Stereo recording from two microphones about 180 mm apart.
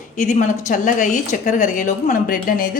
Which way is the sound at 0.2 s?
45° left (ahead or behind).